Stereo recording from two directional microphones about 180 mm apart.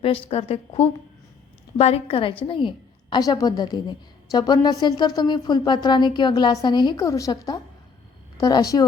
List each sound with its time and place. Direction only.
0.0 s a woman's voice: 30° left (ahead or behind)